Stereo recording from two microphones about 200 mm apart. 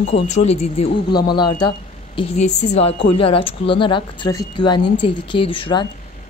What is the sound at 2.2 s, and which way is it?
A woman's voice, 35° left (ahead or behind).